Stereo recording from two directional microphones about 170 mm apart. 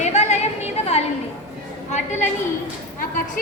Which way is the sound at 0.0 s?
40° left (ahead or behind).